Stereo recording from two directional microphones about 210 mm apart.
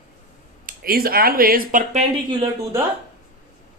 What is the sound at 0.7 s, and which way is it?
Speech, 45° right (ahead or behind).